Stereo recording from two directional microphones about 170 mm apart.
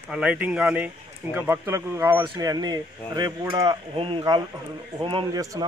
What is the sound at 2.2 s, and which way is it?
Speech, 25° right (ahead or behind).